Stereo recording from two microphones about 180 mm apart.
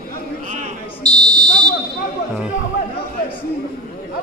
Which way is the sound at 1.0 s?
25° right (ahead or behind).